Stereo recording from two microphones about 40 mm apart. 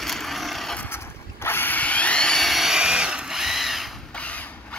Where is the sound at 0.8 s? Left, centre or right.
Left.